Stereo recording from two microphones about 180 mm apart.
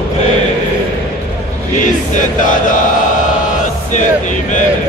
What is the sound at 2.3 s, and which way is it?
Chant, 45° left (ahead or behind).